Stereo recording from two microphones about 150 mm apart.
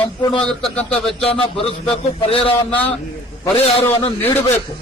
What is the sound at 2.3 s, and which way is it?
Speech, 40° left (ahead or behind).